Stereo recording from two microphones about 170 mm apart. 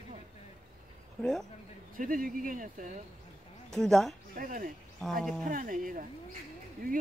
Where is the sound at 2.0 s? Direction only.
55° right (ahead or behind).